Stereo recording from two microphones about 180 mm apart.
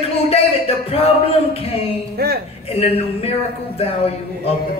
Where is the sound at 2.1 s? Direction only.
60° right (ahead or behind).